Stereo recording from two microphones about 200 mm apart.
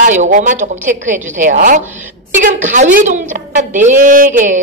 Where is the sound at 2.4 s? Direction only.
40° right (ahead or behind).